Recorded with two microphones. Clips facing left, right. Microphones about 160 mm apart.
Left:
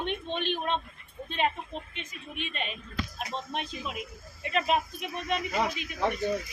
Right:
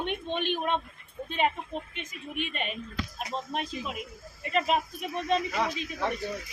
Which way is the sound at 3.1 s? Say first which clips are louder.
Right 3 dB; 5° right (ahead or behind).